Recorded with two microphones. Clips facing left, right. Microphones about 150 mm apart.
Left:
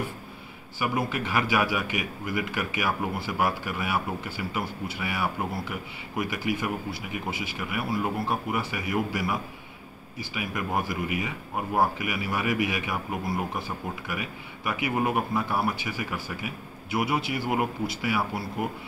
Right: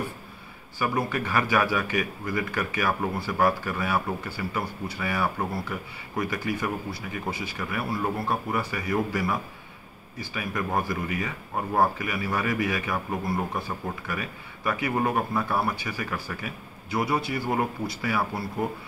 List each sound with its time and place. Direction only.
0.7 s speech: 15° left (ahead or behind)